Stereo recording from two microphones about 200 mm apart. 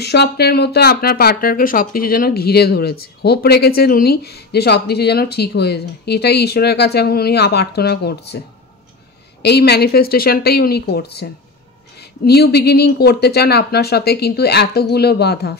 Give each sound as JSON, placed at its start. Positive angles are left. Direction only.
{"t": 0.0, "sound": "speech", "side_deg": 55}
{"t": 9.4, "sound": "speech", "side_deg": 55}